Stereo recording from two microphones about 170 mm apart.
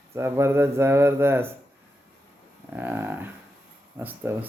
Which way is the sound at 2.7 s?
10° right (ahead or behind).